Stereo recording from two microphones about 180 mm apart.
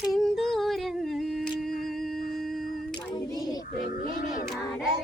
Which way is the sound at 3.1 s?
20° left (ahead or behind).